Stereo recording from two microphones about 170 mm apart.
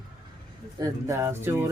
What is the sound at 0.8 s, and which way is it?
Speech, 20° right (ahead or behind).